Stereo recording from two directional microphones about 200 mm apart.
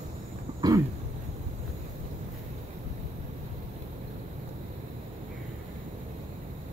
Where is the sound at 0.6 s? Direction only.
15° right (ahead or behind).